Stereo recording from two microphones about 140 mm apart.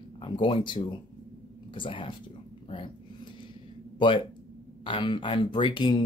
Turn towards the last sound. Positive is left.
turn(degrees=35)  # may be behind; listen again after turning